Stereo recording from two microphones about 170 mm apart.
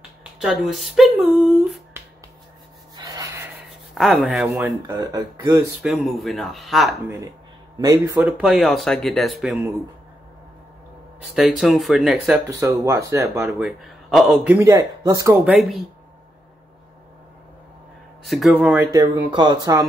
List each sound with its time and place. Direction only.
0.2 s speech: centre (ahead or behind)
2.0 s a sound: 15° right (ahead or behind)
3.0 s breathing: 20° right (ahead or behind)
3.9 s speech: centre (ahead or behind)
4.8 s speech: 20° right (ahead or behind)
5.8 s speech: centre (ahead or behind)
7.8 s speech: 20° right (ahead or behind)
8.2 s speech: 5° right (ahead or behind)
11.3 s speech: centre (ahead or behind)
12.5 s speech: 15° right (ahead or behind)
13.5 s speech: centre (ahead or behind)
14.6 s speech: 20° right (ahead or behind)
15.4 s speech: centre (ahead or behind)
18.2 s speech: centre (ahead or behind); by 19.9 s 20° right (ahead or behind)